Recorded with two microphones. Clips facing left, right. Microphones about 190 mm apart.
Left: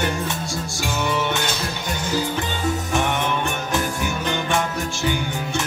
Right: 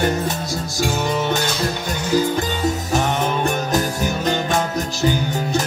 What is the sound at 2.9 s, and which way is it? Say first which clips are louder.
Music: right 2 dB; 40° right (ahead or behind).